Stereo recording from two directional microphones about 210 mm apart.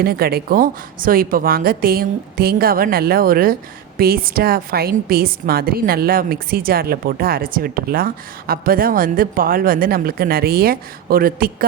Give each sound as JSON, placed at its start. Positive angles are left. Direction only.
{"t": 0.0, "sound": "a woman's voice", "side_deg": -45}